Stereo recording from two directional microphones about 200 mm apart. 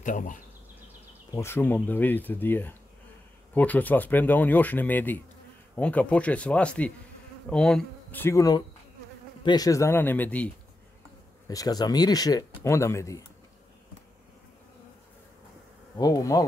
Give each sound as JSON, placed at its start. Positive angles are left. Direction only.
{"t": 0.0, "sound": "speech", "side_deg": 40}
{"t": 1.3, "sound": "speech", "side_deg": 10}
{"t": 11.4, "sound": "speech", "side_deg": 20}
{"t": 16.0, "sound": "speech", "side_deg": 15}